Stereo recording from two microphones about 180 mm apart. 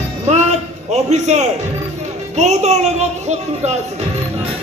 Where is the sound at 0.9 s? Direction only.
40° right (ahead or behind).